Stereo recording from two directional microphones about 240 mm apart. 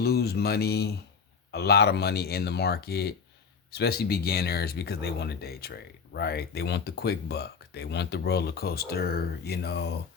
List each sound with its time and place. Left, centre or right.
0.0 s speech: left